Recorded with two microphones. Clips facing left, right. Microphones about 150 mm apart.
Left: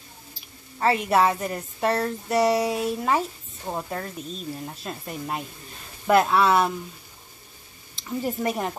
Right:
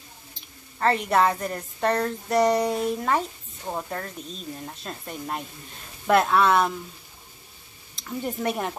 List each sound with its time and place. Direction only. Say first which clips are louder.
0.3 s a woman's voice: left 2 dB; 5° left (ahead or behind)
7.9 s a woman's voice: left 2 dB; 5° left (ahead or behind)